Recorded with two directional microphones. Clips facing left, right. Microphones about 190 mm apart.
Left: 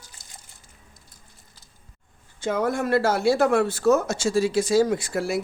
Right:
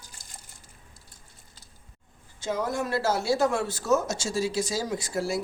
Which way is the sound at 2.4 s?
55° left (ahead or behind).